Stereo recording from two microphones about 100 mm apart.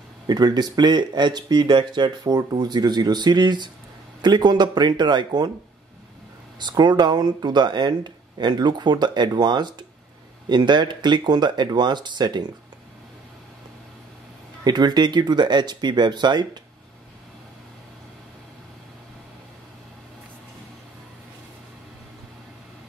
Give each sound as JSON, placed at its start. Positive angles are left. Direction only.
{"t": 0.3, "sound": "speech", "side_deg": -45}
{"t": 6.6, "sound": "speech", "side_deg": -50}
{"t": 14.6, "sound": "speech", "side_deg": -45}